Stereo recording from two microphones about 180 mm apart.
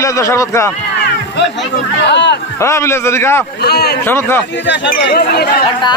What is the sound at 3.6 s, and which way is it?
Speech, 60° left (ahead or behind).